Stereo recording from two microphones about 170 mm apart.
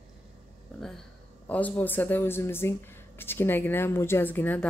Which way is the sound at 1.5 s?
10° left (ahead or behind).